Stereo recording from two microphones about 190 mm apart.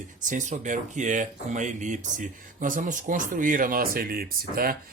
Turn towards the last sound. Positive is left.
turn(degrees=-50)  # may be behind; listen again after turning